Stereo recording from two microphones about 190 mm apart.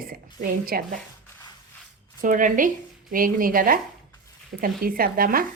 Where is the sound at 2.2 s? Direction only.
45° right (ahead or behind).